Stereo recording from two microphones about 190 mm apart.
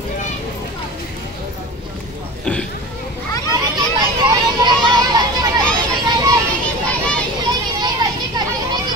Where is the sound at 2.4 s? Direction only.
5° left (ahead or behind).